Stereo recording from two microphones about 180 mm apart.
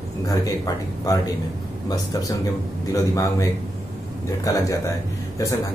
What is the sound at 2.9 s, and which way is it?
Speech, 15° left (ahead or behind).